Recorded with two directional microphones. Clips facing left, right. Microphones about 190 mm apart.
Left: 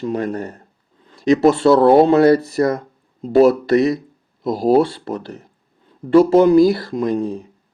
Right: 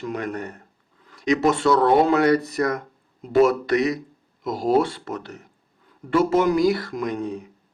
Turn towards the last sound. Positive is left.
turn(degrees=30)  # may be behind; listen again after turning